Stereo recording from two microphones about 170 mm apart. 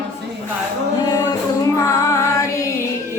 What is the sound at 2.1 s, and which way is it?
Female singing, 20° left (ahead or behind).